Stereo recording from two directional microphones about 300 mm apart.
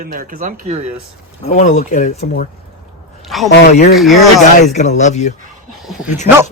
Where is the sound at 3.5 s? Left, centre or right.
Left.